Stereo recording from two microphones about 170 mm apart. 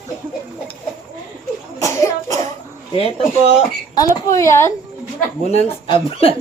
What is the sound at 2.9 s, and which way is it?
Speech, 35° left (ahead or behind).